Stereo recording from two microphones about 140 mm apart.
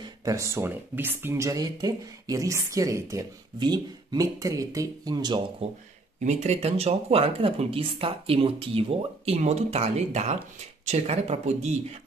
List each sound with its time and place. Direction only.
0.0 s speech: 25° right (ahead or behind)
5.6 s speech: 45° right (ahead or behind)